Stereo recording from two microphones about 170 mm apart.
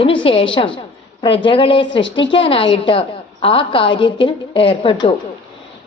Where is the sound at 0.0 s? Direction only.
30° left (ahead or behind).